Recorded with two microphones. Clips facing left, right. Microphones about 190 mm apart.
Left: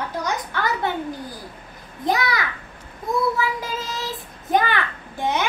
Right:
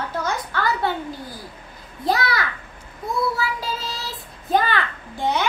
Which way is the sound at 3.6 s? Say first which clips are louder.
Left 1 dB; 20° left (ahead or behind).